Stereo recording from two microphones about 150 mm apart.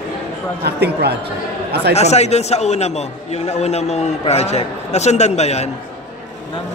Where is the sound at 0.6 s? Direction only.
90° right.